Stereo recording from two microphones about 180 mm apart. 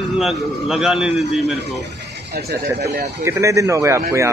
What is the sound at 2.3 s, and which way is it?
Speech, 60° right (ahead or behind).